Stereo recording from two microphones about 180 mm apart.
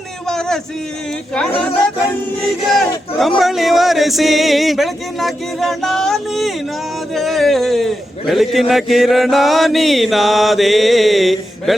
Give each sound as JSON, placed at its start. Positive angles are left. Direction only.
{"t": 0.3, "sound": "a sound", "side_deg": 5}
{"t": 1.3, "sound": "a man's voice", "side_deg": 5}
{"t": 3.2, "sound": "a man's voice", "side_deg": 0}